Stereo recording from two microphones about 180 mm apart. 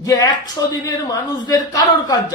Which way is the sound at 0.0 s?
20° left (ahead or behind).